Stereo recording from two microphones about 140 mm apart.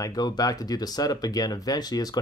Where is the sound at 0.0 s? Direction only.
25° left (ahead or behind).